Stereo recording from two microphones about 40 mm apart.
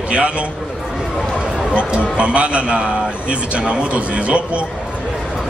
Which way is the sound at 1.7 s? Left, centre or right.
Right.